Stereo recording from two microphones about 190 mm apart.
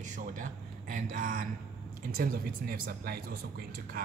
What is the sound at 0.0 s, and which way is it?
A man's voice, 40° right (ahead or behind).